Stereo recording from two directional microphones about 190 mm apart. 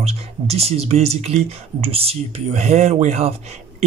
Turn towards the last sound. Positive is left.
turn(degrees=-35)  # may be behind; listen again after turning